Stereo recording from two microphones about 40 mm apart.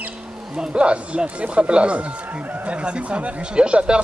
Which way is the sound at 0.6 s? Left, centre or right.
Right.